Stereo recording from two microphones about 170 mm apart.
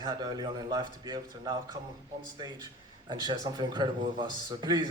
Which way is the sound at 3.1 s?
25° right (ahead or behind).